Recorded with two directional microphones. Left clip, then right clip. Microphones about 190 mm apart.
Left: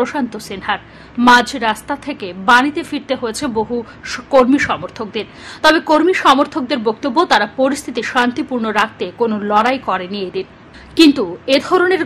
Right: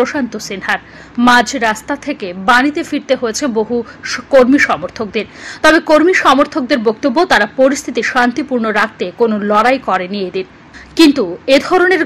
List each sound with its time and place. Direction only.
0.0 s a woman's voice: 10° right (ahead or behind)